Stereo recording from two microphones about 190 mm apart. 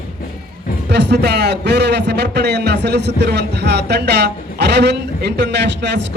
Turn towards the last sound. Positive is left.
turn(degrees=-65)  # may be behind; listen again after turning